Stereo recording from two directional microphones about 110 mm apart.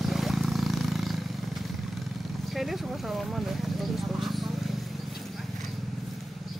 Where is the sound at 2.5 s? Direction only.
Centre (ahead or behind).